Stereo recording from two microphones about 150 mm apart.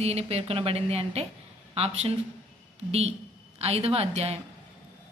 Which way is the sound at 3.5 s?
40° right (ahead or behind).